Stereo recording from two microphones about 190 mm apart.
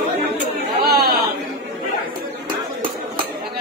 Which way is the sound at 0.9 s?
55° right (ahead or behind).